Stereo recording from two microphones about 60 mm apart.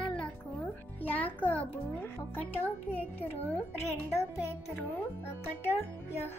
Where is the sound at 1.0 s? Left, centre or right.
Left.